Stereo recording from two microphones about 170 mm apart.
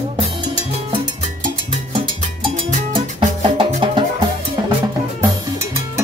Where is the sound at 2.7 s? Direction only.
30° right (ahead or behind).